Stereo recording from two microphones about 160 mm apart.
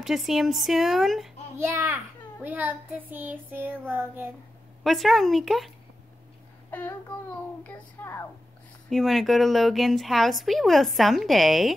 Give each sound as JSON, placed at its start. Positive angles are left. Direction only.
{"t": 0.0, "sound": "a woman's voice", "side_deg": 0}
{"t": 1.6, "sound": "child singing", "side_deg": -15}
{"t": 4.8, "sound": "a woman's voice", "side_deg": 0}
{"t": 6.7, "sound": "speech", "side_deg": 10}
{"t": 8.8, "sound": "a woman's voice", "side_deg": 0}